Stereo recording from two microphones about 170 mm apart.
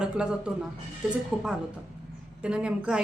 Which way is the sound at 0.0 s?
5° right (ahead or behind).